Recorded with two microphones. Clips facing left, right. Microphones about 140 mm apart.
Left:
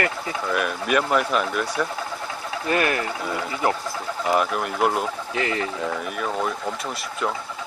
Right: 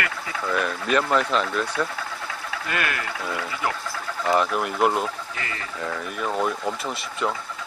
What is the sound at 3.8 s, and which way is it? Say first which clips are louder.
Bird: left 1 dB; 15° left (ahead or behind).